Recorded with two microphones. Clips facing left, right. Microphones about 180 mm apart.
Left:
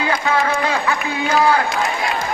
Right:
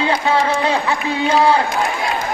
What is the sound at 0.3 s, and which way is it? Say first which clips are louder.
Speech: right 2 dB; 25° right (ahead or behind).